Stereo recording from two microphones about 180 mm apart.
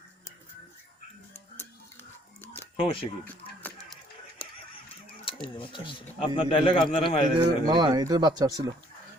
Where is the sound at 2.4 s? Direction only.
10° left (ahead or behind).